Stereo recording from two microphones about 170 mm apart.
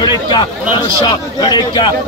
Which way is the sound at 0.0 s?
25° left (ahead or behind).